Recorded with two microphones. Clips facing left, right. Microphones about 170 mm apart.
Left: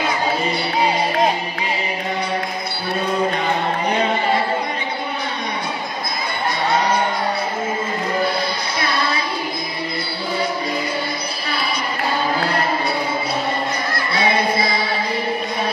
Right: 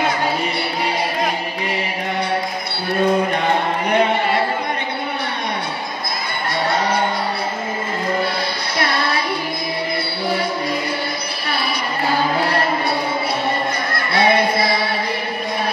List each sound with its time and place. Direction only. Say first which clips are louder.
13.9 s chant: right 4 dB; 60° right (ahead or behind)